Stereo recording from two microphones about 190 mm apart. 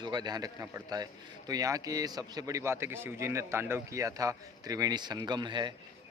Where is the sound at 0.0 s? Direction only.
25° right (ahead or behind).